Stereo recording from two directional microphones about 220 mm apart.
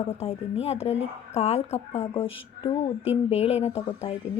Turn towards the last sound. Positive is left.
turn(degrees=30)  # may be behind; listen again after turning